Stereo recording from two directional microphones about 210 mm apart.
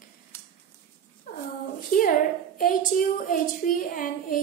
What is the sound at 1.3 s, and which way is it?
Dog, 40° left (ahead or behind).